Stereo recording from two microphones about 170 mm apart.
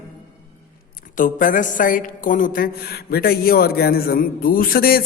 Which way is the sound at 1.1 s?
50° left (ahead or behind).